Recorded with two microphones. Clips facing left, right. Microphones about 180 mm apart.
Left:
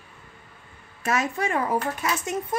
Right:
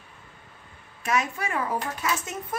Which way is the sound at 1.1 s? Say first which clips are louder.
Left 2 dB; 35° left (ahead or behind).